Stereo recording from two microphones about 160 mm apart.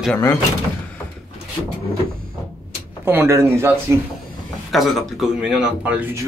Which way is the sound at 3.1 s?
15° right (ahead or behind).